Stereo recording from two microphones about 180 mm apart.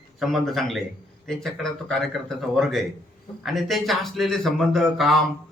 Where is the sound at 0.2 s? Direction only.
Centre (ahead or behind).